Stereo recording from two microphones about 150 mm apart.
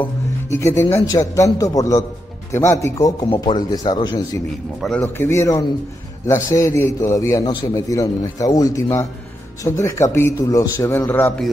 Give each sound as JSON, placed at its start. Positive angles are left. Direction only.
{"t": 0.0, "sound": "music", "side_deg": 15}
{"t": 0.8, "sound": "speech", "side_deg": 20}
{"t": 5.0, "sound": "a man's voice", "side_deg": 15}